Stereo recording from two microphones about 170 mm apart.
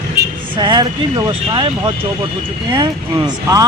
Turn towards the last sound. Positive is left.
turn(degrees=-20)  # may be behind; listen again after turning